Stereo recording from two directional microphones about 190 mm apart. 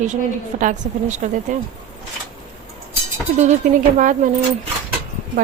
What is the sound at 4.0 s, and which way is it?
Speech, 45° right (ahead or behind).